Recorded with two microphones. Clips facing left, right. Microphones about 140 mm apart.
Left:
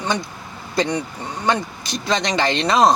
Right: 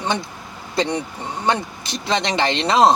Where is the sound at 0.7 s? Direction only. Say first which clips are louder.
Even; 25° right (ahead or behind).